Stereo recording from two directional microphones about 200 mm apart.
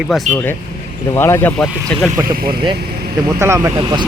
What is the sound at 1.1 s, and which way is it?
Speech, 10° left (ahead or behind).